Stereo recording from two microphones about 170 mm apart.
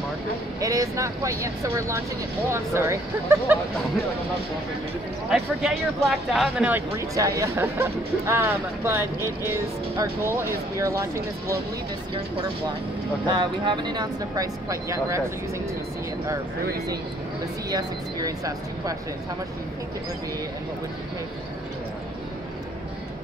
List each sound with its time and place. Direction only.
0.6 s speech: 20° right (ahead or behind)
5.3 s speech: centre (ahead or behind)
6.7 s speech: 15° right (ahead or behind)
13.3 s speech: 25° right (ahead or behind)
17.6 s speech: 20° right (ahead or behind)